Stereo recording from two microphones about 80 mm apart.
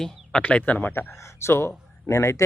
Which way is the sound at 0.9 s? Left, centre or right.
Left.